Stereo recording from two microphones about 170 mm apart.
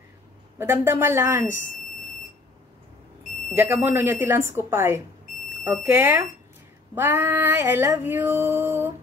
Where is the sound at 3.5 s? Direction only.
15° right (ahead or behind).